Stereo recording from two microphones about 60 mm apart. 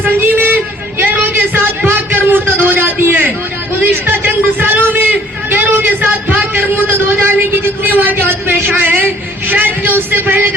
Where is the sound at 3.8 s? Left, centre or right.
Right.